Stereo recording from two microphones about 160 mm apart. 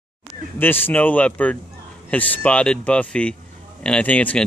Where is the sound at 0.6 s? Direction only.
10° left (ahead or behind).